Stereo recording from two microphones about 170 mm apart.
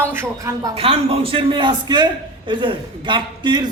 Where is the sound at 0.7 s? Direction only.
35° right (ahead or behind).